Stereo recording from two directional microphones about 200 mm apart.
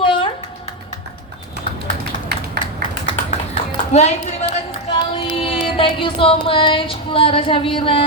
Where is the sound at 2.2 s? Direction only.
55° right (ahead or behind).